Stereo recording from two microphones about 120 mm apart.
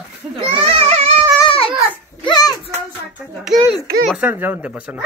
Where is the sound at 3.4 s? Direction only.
5° right (ahead or behind).